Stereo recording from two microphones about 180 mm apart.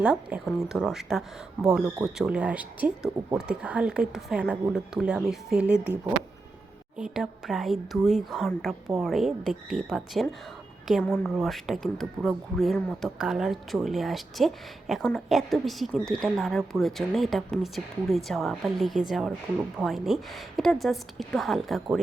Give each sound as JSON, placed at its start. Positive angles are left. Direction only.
{"t": 0.0, "sound": "speech", "side_deg": -5}
{"t": 6.9, "sound": "speech", "side_deg": -5}